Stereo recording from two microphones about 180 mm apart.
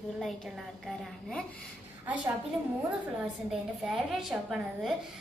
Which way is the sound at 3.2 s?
5° right (ahead or behind).